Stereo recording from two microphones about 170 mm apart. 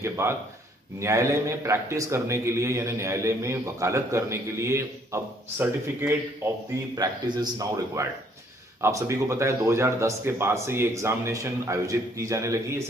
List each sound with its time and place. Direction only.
0.0 s speech: 15° right (ahead or behind)